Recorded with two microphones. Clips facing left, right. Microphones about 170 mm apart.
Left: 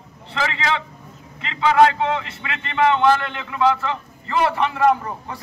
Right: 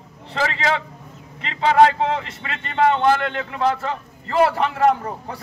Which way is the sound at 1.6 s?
35° right (ahead or behind).